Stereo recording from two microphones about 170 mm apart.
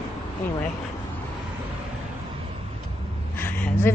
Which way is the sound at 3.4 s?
10° left (ahead or behind).